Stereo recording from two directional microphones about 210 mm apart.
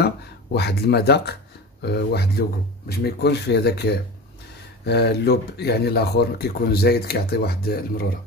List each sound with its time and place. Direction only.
0.0 s speech: 50° left (ahead or behind)